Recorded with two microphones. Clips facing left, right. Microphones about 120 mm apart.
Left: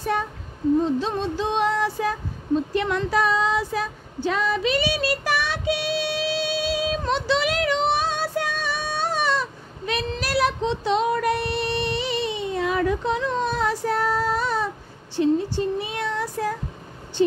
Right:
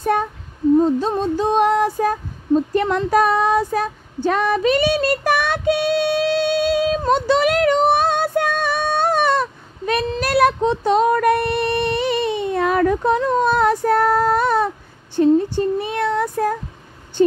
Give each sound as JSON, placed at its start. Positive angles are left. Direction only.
{"t": 0.0, "sound": "a sound", "side_deg": -50}
{"t": 0.7, "sound": "female singing", "side_deg": -45}
{"t": 15.1, "sound": "child singing", "side_deg": -50}